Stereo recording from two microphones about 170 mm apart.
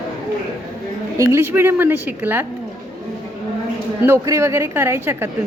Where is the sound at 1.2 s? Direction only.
15° right (ahead or behind).